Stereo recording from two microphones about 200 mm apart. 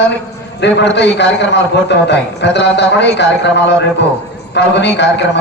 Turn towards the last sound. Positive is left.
turn(degrees=60)  # may be behind; listen again after turning